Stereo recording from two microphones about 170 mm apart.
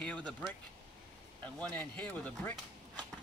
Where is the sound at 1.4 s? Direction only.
10° left (ahead or behind).